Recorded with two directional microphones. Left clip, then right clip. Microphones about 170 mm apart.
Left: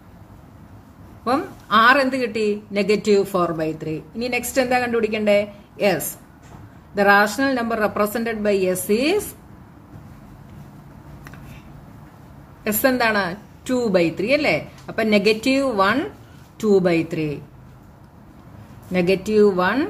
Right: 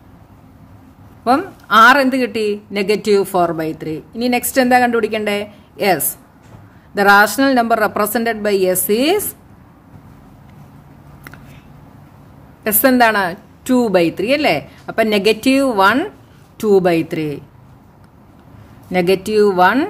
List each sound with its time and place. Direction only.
1.2 s a man's voice: 50° right (ahead or behind)
12.6 s a man's voice: 55° right (ahead or behind)
18.9 s a man's voice: 55° right (ahead or behind)